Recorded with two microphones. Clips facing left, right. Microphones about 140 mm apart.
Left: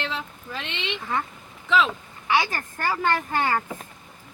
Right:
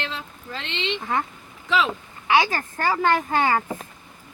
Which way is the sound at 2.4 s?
25° right (ahead or behind).